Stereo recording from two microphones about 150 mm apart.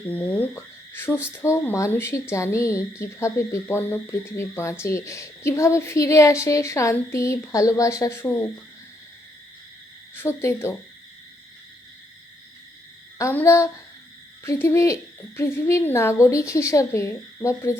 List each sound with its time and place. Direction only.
0.1 s speech: 10° left (ahead or behind)
10.2 s speech: 15° left (ahead or behind)
13.1 s speech: 20° left (ahead or behind)